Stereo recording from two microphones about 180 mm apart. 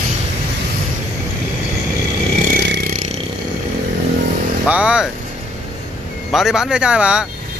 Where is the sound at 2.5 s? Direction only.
55° right (ahead or behind).